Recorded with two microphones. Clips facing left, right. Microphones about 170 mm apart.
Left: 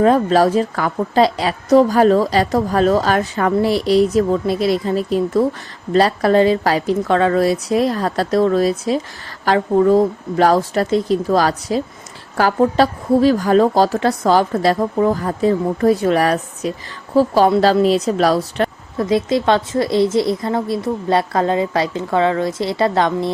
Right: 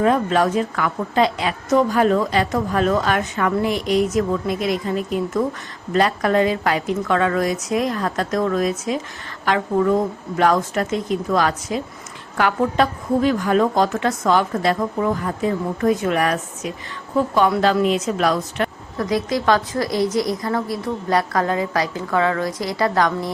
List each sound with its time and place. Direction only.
0.0 s a woman's voice: 35° left (ahead or behind)